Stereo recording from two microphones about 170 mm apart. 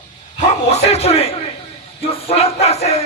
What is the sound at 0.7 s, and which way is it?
Speech, 35° left (ahead or behind).